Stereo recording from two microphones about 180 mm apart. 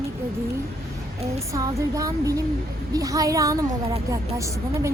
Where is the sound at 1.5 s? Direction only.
20° right (ahead or behind).